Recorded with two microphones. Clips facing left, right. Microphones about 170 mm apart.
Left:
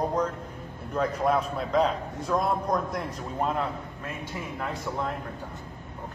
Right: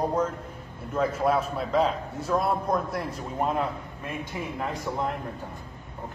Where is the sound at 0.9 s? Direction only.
5° right (ahead or behind).